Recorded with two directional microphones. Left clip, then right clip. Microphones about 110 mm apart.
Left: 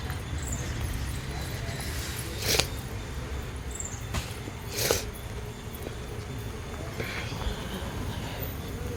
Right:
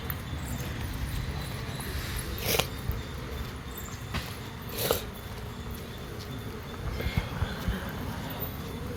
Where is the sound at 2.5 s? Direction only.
10° left (ahead or behind).